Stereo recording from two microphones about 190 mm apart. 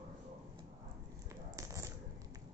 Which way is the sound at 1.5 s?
15° right (ahead or behind).